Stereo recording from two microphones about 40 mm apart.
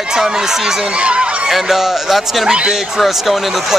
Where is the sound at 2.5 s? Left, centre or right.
Right.